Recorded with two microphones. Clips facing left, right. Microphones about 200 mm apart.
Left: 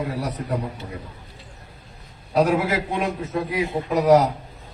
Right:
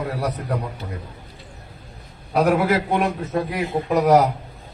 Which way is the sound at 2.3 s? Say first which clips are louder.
Right 2 dB; 65° right (ahead or behind).